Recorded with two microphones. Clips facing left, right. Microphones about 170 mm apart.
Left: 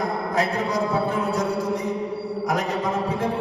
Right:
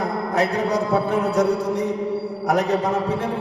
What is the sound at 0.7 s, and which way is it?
Music, 70° right (ahead or behind).